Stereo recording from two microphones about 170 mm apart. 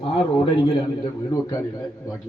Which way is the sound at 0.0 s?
30° left (ahead or behind).